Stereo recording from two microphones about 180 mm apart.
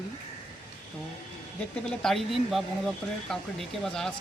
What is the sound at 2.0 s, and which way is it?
Speech, centre (ahead or behind).